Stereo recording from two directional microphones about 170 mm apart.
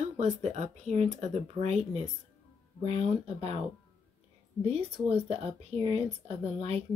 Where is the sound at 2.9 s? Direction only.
35° right (ahead or behind).